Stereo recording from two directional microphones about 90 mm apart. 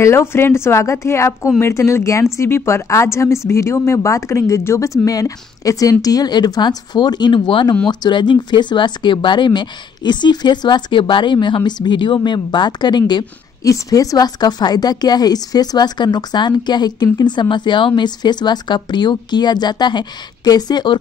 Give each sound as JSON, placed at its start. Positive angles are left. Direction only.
{"t": 0.0, "sound": "a woman's voice", "side_deg": 30}
{"t": 7.9, "sound": "speech", "side_deg": 55}
{"t": 13.7, "sound": "a woman's voice", "side_deg": 40}